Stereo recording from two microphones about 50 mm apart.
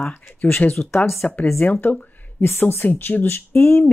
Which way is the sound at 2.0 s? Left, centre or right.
Left.